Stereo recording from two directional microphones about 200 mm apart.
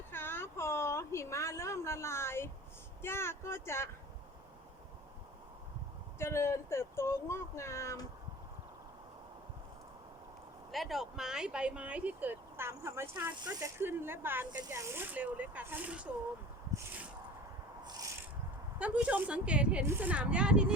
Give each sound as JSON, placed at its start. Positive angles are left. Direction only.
{"t": 0.1, "sound": "a sound", "side_deg": 10}
{"t": 3.0, "sound": "speech", "side_deg": 10}
{"t": 6.1, "sound": "speech", "side_deg": 15}
{"t": 10.7, "sound": "speech", "side_deg": 0}
{"t": 16.7, "sound": "a sound", "side_deg": -10}
{"t": 17.8, "sound": "rub", "side_deg": -20}
{"t": 18.8, "sound": "speech", "side_deg": -5}